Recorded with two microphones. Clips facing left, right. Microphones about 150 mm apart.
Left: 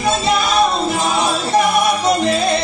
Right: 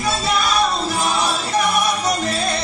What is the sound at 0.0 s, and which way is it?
Music, 25° left (ahead or behind).